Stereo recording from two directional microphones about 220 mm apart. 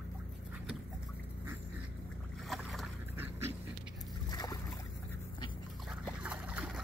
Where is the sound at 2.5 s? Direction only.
Centre (ahead or behind).